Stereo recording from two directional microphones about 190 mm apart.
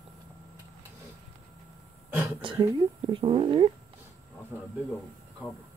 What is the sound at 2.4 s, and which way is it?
Speech, 25° right (ahead or behind).